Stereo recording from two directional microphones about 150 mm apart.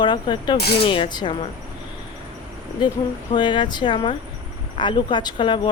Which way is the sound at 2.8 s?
30° left (ahead or behind).